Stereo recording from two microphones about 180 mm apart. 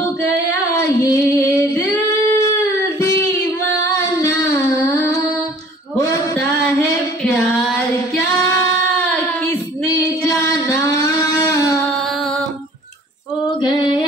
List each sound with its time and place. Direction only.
0.7 s female singing: 15° left (ahead or behind)
3.6 s singing: 15° left (ahead or behind)
5.9 s a sound: 15° left (ahead or behind)
7.2 s female singing: centre (ahead or behind)
8.3 s female singing: 15° left (ahead or behind)
9.8 s music: 15° left (ahead or behind)
13.6 s mantra: 25° left (ahead or behind)